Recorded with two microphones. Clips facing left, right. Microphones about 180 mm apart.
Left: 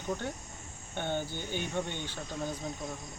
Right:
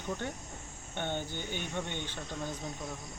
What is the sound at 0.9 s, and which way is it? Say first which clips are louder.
Speech: left 2 dB; 10° left (ahead or behind).